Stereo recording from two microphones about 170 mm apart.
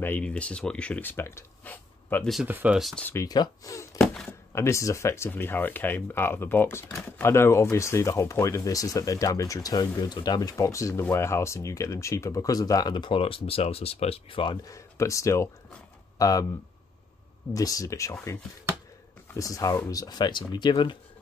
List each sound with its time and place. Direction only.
0.0 s speech: 10° left (ahead or behind)
2.4 s speech: 10° right (ahead or behind)
3.1 s speech: 20° left (ahead or behind)
4.0 s thunk: 5° left (ahead or behind)
4.3 s speech: 15° left (ahead or behind)
17.6 s speech: 20° left (ahead or behind)
19.3 s speech: 20° left (ahead or behind)